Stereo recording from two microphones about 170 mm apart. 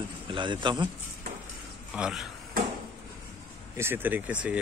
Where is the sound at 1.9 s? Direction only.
5° right (ahead or behind).